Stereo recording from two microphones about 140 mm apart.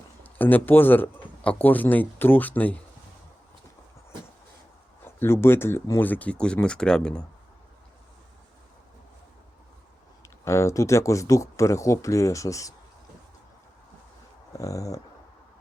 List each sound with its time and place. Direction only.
0.2 s speech: 15° left (ahead or behind)
5.0 s speech: 15° left (ahead or behind)
10.2 s speech: 20° left (ahead or behind)
14.6 s speech: 25° left (ahead or behind)